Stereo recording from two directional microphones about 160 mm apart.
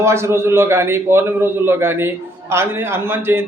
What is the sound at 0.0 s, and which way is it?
A man's voice, 15° right (ahead or behind).